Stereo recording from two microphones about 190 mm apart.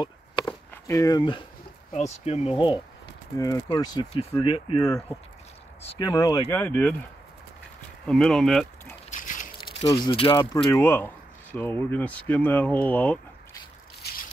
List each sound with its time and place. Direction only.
0.0 s a sound: 20° left (ahead or behind)
2.2 s speech: 35° left (ahead or behind)
3.3 s speech: 20° left (ahead or behind)
8.1 s speech: centre (ahead or behind)
9.1 s dog: 45° left (ahead or behind)
9.6 s speech: 25° left (ahead or behind)
10.6 s speech: 10° left (ahead or behind)
14.0 s a sound: 60° left (ahead or behind)